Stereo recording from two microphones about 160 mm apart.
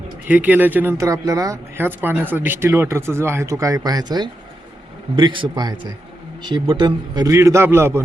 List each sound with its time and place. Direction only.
0.3 s a man's voice: 10° right (ahead or behind)